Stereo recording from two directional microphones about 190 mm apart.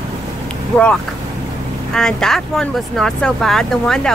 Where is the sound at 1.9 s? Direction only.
5° left (ahead or behind).